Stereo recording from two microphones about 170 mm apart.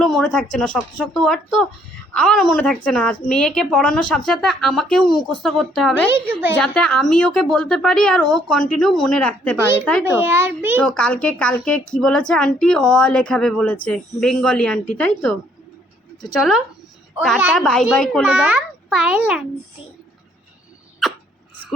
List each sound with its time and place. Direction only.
0.0 s a child's voice: 5° left (ahead or behind)
6.1 s a child's voice: 15° right (ahead or behind)
6.6 s a child's voice: 5° left (ahead or behind)
9.6 s a child's voice: 15° right (ahead or behind)
10.8 s a child's voice: 5° left (ahead or behind)
17.2 s a child's voice: centre (ahead or behind)